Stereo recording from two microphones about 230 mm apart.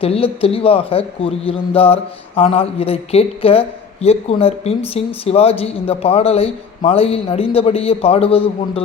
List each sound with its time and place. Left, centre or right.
0.0 s a man's voice: left